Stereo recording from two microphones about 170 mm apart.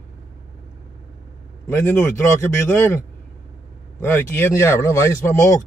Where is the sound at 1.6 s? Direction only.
10° left (ahead or behind).